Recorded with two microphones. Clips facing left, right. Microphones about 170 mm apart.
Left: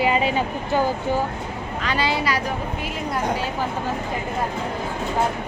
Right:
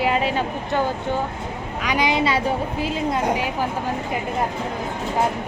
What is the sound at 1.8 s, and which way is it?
A woman's voice, 15° right (ahead or behind).